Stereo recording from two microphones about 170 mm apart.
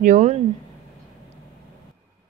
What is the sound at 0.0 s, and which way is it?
Speech, 45° right (ahead or behind).